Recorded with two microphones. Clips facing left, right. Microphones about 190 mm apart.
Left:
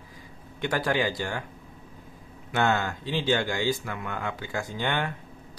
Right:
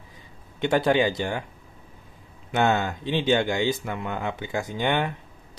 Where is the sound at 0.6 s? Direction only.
20° right (ahead or behind).